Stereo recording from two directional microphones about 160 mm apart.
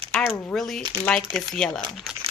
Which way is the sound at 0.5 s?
Centre (ahead or behind).